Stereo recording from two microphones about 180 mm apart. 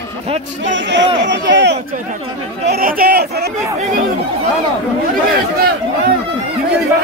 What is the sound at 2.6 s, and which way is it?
Speech, 60° right (ahead or behind).